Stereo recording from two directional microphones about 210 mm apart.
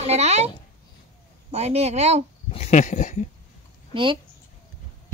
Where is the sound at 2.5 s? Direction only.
35° left (ahead or behind).